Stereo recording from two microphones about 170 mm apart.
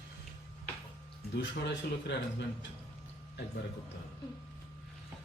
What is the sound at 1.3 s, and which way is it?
Speech, 90° left.